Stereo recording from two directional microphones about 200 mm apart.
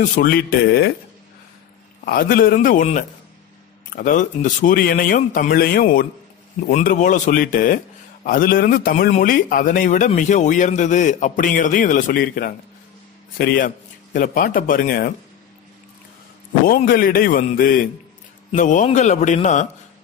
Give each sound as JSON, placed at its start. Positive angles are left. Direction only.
{"t": 0.0, "sound": "a man's voice", "side_deg": 45}
{"t": 2.0, "sound": "a man's voice", "side_deg": 45}
{"t": 16.6, "sound": "a man's voice", "side_deg": 45}